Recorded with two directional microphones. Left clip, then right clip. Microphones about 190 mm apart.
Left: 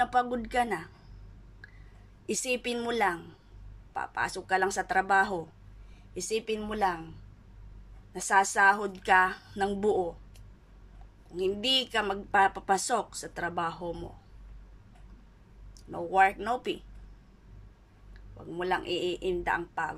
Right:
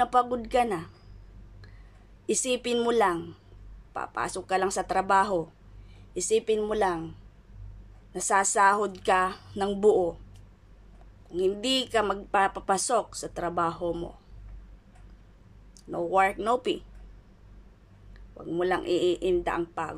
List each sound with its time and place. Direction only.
0.0 s speech: 15° right (ahead or behind)
2.2 s speech: 15° right (ahead or behind)
8.1 s speech: 15° right (ahead or behind)
11.2 s speech: 15° right (ahead or behind)
15.7 s speech: 15° right (ahead or behind)
18.5 s speech: 15° right (ahead or behind)